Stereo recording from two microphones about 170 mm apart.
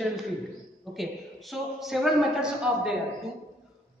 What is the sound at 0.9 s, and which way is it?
A woman's voice, centre (ahead or behind).